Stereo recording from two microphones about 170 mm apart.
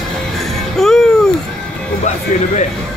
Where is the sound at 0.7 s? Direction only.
Centre (ahead or behind).